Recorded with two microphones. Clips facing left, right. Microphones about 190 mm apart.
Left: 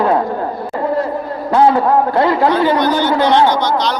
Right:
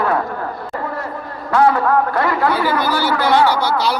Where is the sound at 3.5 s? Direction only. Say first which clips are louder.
Left 2 dB; 10° right (ahead or behind).